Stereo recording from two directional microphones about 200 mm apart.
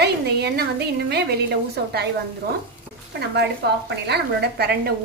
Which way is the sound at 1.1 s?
55° right (ahead or behind).